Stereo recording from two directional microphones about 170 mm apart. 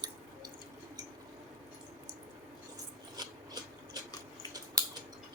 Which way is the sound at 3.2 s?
25° right (ahead or behind).